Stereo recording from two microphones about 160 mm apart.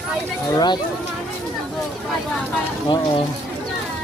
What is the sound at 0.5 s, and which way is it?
Speech, 25° left (ahead or behind).